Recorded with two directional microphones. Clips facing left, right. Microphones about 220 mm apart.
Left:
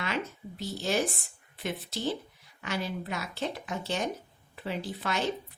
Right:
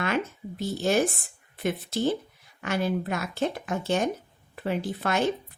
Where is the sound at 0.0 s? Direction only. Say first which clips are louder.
Right 6 dB; 50° right (ahead or behind).